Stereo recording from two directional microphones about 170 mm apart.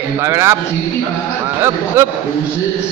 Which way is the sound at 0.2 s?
15° right (ahead or behind).